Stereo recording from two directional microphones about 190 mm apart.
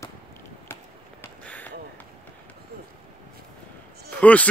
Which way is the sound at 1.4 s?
10° left (ahead or behind).